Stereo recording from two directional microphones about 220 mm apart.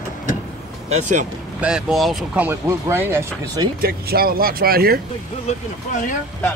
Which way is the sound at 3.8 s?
45° right (ahead or behind).